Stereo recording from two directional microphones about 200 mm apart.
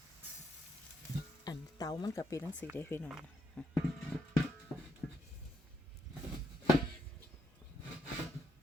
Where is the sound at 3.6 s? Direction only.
5° left (ahead or behind).